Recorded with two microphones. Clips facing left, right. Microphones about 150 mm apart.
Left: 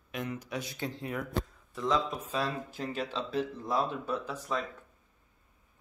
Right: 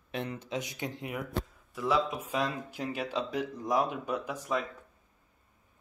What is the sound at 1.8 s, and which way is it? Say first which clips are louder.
Speech: right 1 dB; 5° right (ahead or behind).